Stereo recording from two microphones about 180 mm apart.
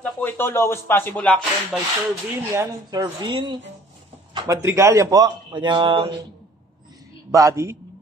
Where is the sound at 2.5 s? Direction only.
20° right (ahead or behind).